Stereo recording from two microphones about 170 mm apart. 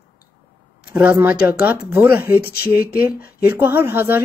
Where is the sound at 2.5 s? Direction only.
65° left (ahead or behind).